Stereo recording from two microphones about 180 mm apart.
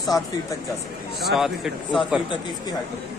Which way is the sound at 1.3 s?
Centre (ahead or behind).